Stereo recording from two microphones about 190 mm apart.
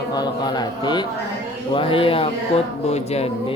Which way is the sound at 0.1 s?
20° left (ahead or behind).